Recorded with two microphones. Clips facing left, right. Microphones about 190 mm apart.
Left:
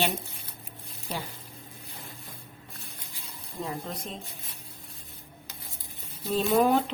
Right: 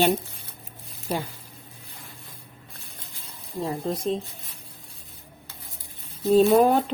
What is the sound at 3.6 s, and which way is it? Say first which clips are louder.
Speech: right 9 dB; 35° right (ahead or behind).